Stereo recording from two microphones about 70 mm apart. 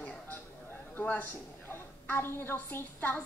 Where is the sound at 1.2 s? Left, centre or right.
Left.